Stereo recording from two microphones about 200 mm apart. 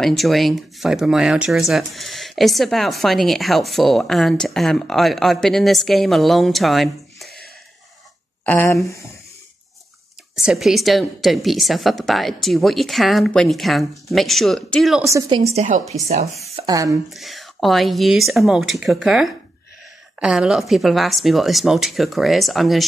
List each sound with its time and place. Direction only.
0.0 s speech: centre (ahead or behind)
8.5 s speech: 5° left (ahead or behind)
10.3 s speech: centre (ahead or behind)
15.0 s a woman's voice: 20° right (ahead or behind)
16.6 s speech: 15° right (ahead or behind)
17.1 s speech: centre (ahead or behind)